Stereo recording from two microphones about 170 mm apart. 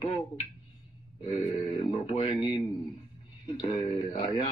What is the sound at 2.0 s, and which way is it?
Speech, 35° left (ahead or behind).